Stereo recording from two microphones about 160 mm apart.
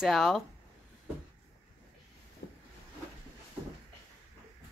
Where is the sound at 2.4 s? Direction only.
85° left.